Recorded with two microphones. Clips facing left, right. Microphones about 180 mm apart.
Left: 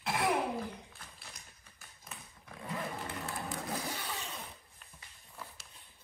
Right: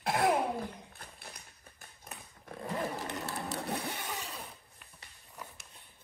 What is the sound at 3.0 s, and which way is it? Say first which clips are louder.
Printer: right 2 dB; 75° right (ahead or behind).